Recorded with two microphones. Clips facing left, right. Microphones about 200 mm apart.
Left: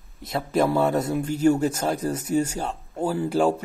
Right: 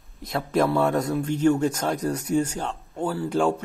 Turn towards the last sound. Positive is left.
turn(degrees=5)  # may be behind; listen again after turning